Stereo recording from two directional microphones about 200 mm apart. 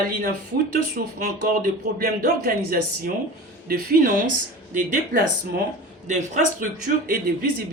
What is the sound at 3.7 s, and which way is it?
A man's voice, 45° right (ahead or behind).